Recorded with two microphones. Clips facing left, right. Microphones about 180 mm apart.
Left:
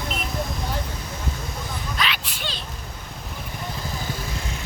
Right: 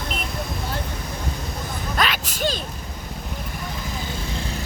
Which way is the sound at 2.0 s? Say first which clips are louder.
Right 7 dB; 45° right (ahead or behind).